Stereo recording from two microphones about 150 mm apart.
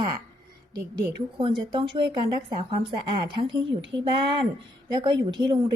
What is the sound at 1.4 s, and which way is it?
Speech, 35° right (ahead or behind).